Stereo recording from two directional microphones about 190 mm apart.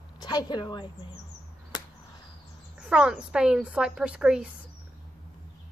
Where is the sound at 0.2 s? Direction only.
20° left (ahead or behind).